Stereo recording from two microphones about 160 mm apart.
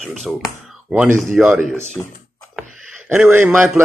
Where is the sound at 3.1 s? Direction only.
15° right (ahead or behind).